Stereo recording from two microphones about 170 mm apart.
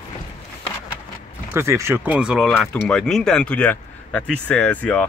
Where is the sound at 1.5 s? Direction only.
15° right (ahead or behind).